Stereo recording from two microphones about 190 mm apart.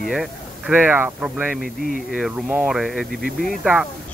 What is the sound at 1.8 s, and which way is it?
Speech, 50° left (ahead or behind).